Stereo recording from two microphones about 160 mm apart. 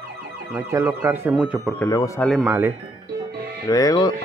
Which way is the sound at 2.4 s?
10° right (ahead or behind).